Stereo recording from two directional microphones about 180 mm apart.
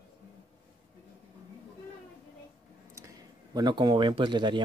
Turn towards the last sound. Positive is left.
turn(degrees=-25)  # may be behind; listen again after turning